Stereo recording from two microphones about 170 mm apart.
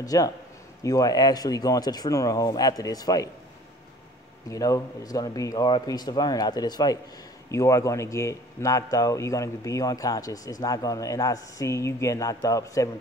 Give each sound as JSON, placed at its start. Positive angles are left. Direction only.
{"t": 0.0, "sound": "speech", "side_deg": 20}
{"t": 4.5, "sound": "speech", "side_deg": 20}